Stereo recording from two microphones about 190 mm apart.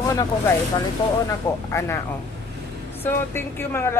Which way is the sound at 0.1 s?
15° left (ahead or behind).